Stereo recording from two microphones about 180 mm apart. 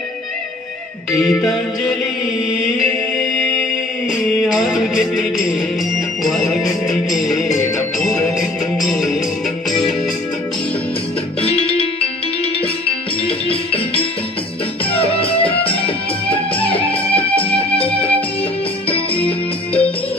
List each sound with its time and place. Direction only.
1.1 s music: centre (ahead or behind)
4.4 s music: 5° right (ahead or behind)
11.4 s music: 30° left (ahead or behind)
13.5 s music: 30° left (ahead or behind)
17.8 s music: 10° left (ahead or behind)
18.9 s music: 30° left (ahead or behind)